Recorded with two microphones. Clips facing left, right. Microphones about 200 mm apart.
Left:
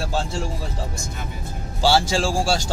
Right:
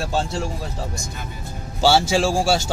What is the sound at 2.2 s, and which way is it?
Speech, 25° right (ahead or behind).